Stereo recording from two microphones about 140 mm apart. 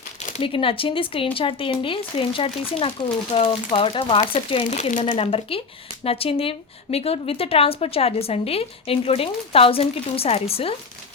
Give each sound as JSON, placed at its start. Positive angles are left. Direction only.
{"t": 0.4, "sound": "speech", "side_deg": 40}
{"t": 4.7, "sound": "speech", "side_deg": 60}
{"t": 5.0, "sound": "speech", "side_deg": 45}